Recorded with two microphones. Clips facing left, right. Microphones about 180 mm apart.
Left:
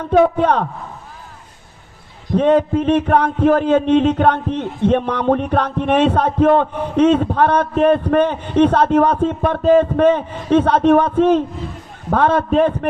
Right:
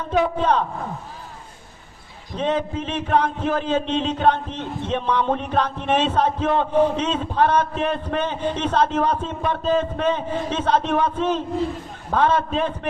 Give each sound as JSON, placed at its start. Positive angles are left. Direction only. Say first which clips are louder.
{"t": 0.1, "sound": "a man's voice", "louder": "left 6 dB", "side_deg": 55}
{"t": 2.3, "sound": "a man's voice", "louder": "left 9 dB", "side_deg": 60}